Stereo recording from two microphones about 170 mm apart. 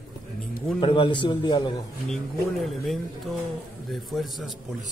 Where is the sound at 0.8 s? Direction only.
30° left (ahead or behind).